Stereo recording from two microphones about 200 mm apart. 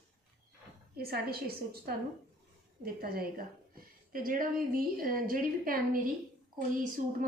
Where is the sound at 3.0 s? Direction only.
50° right (ahead or behind).